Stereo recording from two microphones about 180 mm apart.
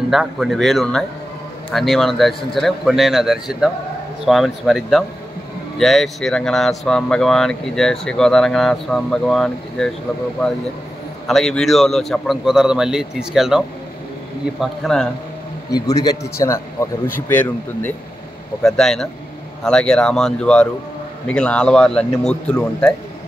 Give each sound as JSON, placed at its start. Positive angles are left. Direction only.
{"t": 0.1, "sound": "speech", "side_deg": 0}
{"t": 11.2, "sound": "speech", "side_deg": 0}
{"t": 15.9, "sound": "speech", "side_deg": 20}